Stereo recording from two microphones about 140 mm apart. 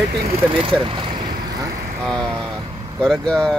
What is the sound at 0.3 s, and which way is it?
Speech, 40° right (ahead or behind).